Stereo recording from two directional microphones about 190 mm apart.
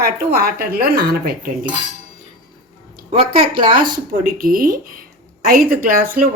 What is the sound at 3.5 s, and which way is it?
A woman's voice, 50° right (ahead or behind).